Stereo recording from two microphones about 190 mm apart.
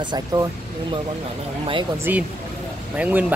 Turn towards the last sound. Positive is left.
turn(degrees=-5)  # may be behind; listen again after turning